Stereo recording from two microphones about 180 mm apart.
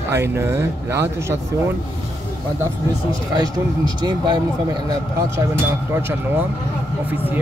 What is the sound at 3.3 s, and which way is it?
Speech, 25° right (ahead or behind).